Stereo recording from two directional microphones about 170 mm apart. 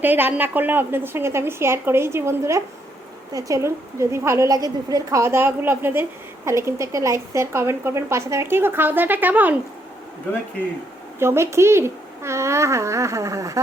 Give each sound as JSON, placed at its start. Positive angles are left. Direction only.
{"t": 0.0, "sound": "a woman's voice", "side_deg": -10}
{"t": 11.2, "sound": "a woman's voice", "side_deg": -15}